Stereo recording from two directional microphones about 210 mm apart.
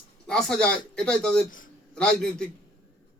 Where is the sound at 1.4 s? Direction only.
40° left (ahead or behind).